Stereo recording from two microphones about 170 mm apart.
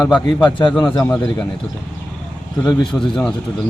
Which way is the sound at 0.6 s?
30° left (ahead or behind).